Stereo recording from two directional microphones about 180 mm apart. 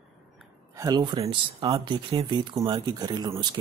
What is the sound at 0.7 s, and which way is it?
Speech, 20° right (ahead or behind).